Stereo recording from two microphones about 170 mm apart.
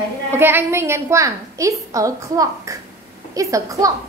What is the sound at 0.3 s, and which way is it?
A woman's voice, 10° right (ahead or behind).